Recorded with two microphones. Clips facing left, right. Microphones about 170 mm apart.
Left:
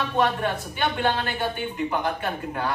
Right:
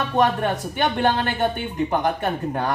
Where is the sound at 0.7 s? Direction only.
45° right (ahead or behind).